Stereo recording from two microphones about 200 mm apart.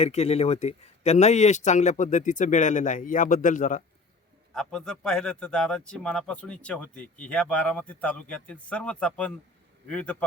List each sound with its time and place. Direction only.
0.0 s speech: 30° left (ahead or behind)
4.5 s speech: 5° left (ahead or behind)